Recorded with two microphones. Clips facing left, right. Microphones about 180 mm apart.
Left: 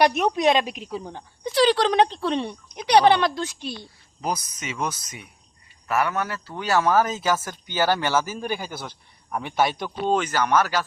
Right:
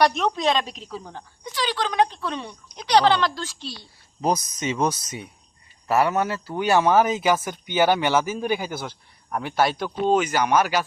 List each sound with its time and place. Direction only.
0.2 s a woman's voice: 15° left (ahead or behind)
1.5 s speech: 40° left (ahead or behind); by 3.7 s 20° left (ahead or behind)
4.2 s speech: 35° right (ahead or behind); by 10.8 s 15° right (ahead or behind)